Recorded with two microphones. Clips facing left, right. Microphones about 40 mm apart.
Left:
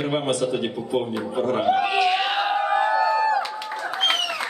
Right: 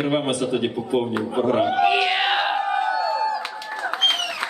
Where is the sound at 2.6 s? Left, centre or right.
Centre.